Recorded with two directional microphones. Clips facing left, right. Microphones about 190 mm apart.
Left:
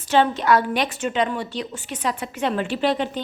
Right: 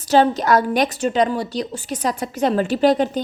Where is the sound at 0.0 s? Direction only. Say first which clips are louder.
Right 3 dB; 40° right (ahead or behind).